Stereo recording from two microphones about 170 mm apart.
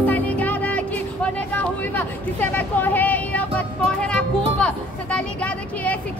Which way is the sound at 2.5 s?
10° left (ahead or behind).